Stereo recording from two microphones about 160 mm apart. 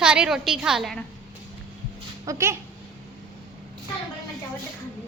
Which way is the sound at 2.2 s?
20° right (ahead or behind).